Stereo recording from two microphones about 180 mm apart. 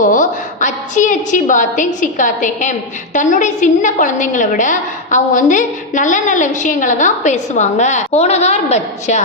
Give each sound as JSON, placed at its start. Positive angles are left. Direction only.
{"t": 0.0, "sound": "a woman's voice", "side_deg": 45}